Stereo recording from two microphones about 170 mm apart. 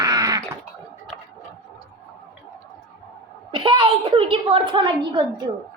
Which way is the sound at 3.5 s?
30° right (ahead or behind).